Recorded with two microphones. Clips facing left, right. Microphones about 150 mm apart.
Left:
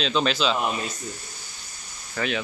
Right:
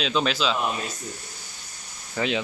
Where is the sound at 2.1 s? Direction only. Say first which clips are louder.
Right 2 dB; 20° right (ahead or behind).